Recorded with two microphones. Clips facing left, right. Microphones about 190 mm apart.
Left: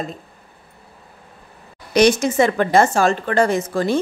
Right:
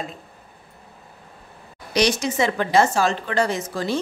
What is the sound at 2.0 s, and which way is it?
Speech, 50° left (ahead or behind).